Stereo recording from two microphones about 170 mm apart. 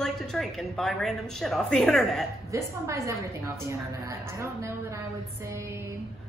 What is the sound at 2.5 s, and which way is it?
A woman's voice, 15° right (ahead or behind).